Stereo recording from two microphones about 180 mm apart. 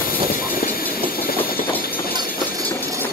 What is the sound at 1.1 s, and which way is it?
Vehicle, 55° left (ahead or behind).